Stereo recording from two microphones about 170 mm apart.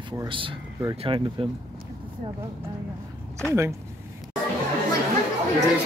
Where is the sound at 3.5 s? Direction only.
15° right (ahead or behind).